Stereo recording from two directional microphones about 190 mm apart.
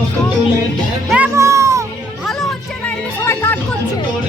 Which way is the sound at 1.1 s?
10° right (ahead or behind).